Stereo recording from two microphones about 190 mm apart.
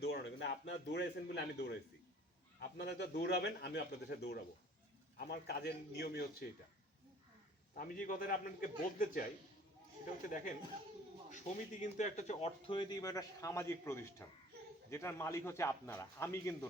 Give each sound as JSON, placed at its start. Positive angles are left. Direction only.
{"t": 0.0, "sound": "a man's voice", "side_deg": 65}
{"t": 7.8, "sound": "a man's voice", "side_deg": 45}
{"t": 10.2, "sound": "a man's voice", "side_deg": 45}